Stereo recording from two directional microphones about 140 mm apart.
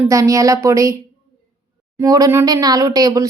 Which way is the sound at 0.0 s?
25° right (ahead or behind).